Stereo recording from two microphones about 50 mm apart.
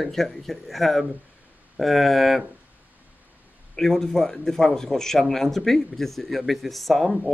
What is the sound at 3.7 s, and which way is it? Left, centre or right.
A man's voice, centre.